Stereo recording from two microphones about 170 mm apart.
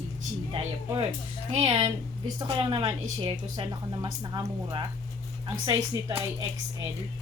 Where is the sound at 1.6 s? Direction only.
25° right (ahead or behind).